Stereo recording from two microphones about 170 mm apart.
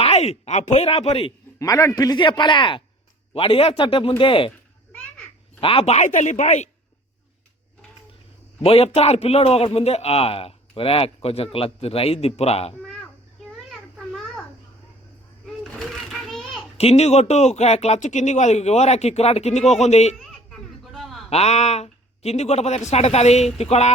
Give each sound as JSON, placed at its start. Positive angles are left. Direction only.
{"t": 0.0, "sound": "a man's voice", "side_deg": 40}
{"t": 1.5, "sound": "a man's voice", "side_deg": 20}
{"t": 4.9, "sound": "children playing", "side_deg": 10}
{"t": 5.5, "sound": "speech", "side_deg": 35}
{"t": 8.6, "sound": "a man's voice", "side_deg": 35}
{"t": 13.7, "sound": "children playing", "side_deg": 0}
{"t": 15.7, "sound": "children playing", "side_deg": 0}
{"t": 16.7, "sound": "a man's voice", "side_deg": 35}
{"t": 20.1, "sound": "a sound", "side_deg": 0}
{"t": 21.2, "sound": "a man's voice", "side_deg": 40}